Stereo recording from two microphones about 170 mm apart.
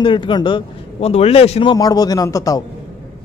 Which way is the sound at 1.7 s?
20° left (ahead or behind).